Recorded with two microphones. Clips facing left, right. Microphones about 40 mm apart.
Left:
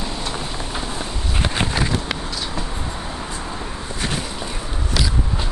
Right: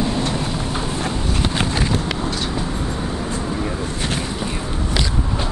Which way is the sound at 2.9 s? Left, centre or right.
Centre.